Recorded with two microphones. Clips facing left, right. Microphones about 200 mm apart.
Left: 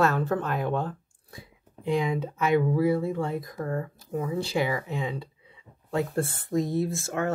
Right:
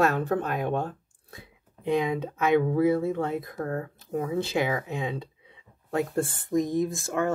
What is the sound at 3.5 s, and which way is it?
Speech, 40° right (ahead or behind).